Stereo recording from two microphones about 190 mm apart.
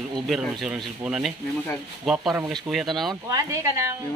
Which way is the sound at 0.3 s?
Centre (ahead or behind).